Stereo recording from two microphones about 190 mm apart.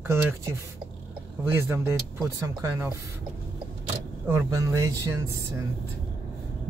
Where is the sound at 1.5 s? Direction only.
10° right (ahead or behind).